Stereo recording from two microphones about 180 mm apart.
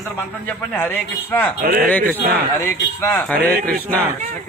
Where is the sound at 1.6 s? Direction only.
50° right (ahead or behind).